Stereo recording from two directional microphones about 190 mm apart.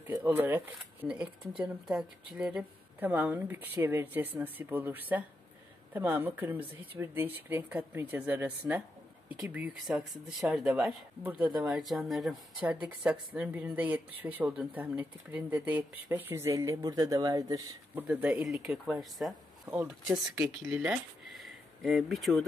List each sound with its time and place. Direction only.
0.0 s speech: 10° right (ahead or behind)
18.0 s speech: 5° right (ahead or behind)
19.6 s speech: 20° right (ahead or behind)
19.9 s speech: 5° right (ahead or behind)